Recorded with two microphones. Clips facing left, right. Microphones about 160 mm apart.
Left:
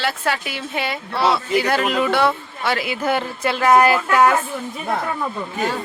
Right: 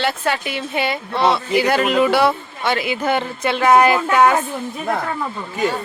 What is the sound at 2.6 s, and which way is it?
Speech, centre (ahead or behind).